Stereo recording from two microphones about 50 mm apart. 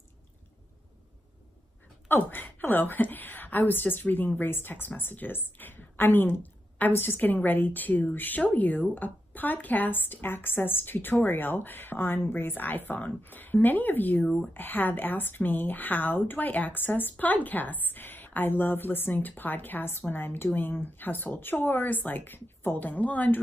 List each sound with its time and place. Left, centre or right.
2.0 s a woman's voice: left
14.2 s speech: centre
14.5 s a woman's voice: left